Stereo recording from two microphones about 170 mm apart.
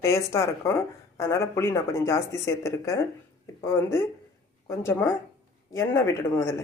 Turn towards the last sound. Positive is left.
turn(degrees=15)  # may be behind; listen again after turning